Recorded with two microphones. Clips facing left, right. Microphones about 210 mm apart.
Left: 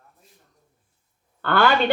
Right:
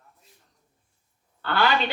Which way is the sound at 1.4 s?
50° left (ahead or behind).